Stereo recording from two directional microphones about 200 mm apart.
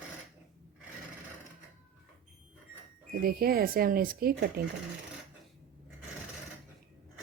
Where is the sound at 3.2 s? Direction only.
50° right (ahead or behind).